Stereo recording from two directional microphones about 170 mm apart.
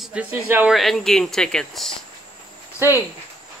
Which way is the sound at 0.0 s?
5° right (ahead or behind).